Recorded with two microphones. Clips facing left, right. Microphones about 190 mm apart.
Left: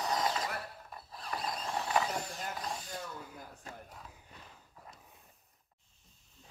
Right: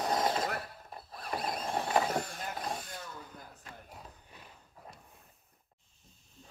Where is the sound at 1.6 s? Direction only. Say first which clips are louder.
Right 2 dB; 50° right (ahead or behind).